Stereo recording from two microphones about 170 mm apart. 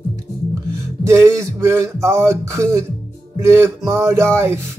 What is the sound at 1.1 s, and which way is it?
Speech, 15° right (ahead or behind).